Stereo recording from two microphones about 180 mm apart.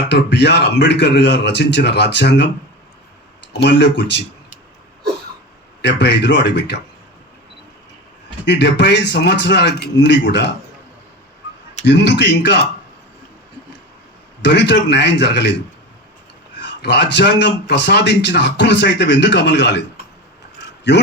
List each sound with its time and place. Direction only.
0.1 s a man's voice: 70° left (ahead or behind)
3.6 s a man's voice: 75° left (ahead or behind)
5.8 s a man's voice: 75° left (ahead or behind)
8.4 s a man's voice: 75° left (ahead or behind)
11.9 s a man's voice: 75° left (ahead or behind)
14.4 s a man's voice: 75° left (ahead or behind)
16.6 s a man's voice: 75° left (ahead or behind)